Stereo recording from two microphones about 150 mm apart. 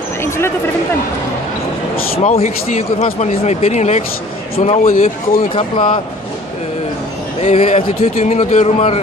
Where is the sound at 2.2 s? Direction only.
45° left (ahead or behind).